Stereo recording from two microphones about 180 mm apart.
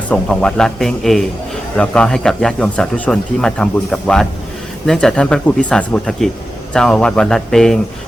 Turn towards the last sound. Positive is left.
turn(degrees=0)  # may be behind; listen again after turning